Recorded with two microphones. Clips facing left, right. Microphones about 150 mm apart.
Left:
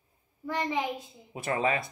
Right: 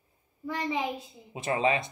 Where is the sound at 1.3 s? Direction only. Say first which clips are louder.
Right 2 dB; 25° right (ahead or behind).